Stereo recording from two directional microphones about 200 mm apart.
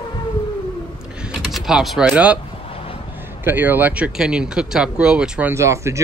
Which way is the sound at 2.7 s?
30° left (ahead or behind).